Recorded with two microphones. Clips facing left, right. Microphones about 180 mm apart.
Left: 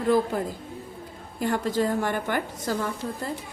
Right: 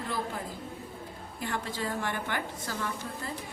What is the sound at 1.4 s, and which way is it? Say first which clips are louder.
A woman's voice: left 10 dB; 45° left (ahead or behind).